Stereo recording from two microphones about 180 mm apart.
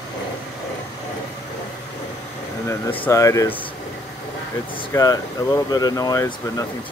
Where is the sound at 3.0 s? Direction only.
15° left (ahead or behind).